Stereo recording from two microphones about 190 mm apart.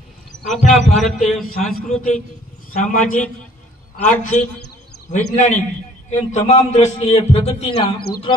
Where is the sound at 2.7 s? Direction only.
40° left (ahead or behind).